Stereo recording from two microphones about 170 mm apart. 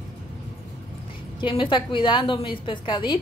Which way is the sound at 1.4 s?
30° left (ahead or behind).